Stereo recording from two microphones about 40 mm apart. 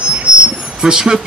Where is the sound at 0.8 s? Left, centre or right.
Centre.